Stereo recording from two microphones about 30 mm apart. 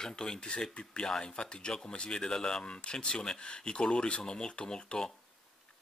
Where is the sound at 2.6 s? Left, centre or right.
Left.